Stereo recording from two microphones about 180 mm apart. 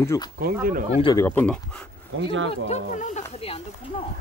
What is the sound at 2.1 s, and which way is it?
Speech, 90° right.